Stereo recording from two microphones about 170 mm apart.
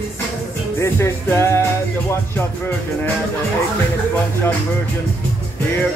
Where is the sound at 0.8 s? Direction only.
15° left (ahead or behind).